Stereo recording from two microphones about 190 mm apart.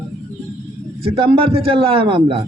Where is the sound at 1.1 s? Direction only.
30° right (ahead or behind).